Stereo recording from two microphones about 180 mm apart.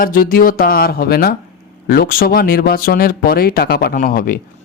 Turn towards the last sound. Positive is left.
turn(degrees=50)  # may be behind; listen again after turning